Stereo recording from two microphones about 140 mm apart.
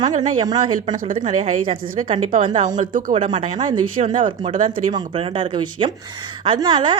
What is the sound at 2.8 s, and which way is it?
Speech, 75° right (ahead or behind).